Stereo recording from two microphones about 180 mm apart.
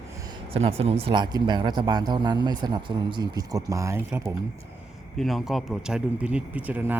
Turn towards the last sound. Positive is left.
turn(degrees=-10)  # may be behind; listen again after turning